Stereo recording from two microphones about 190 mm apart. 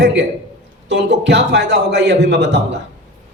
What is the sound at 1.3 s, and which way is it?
A man's voice, 65° right (ahead or behind).